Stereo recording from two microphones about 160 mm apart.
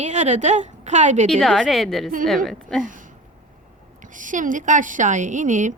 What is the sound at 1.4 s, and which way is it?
A woman's voice, centre (ahead or behind).